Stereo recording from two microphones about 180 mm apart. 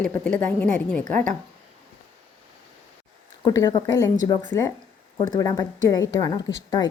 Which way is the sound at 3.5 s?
20° left (ahead or behind).